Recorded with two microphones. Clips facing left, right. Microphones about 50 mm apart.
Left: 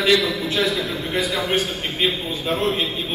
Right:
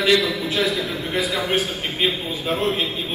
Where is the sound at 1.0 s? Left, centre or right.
Centre.